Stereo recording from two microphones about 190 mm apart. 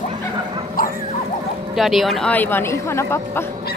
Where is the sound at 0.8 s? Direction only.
50° left (ahead or behind).